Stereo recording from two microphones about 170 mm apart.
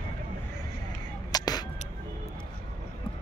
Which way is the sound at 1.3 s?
25° left (ahead or behind).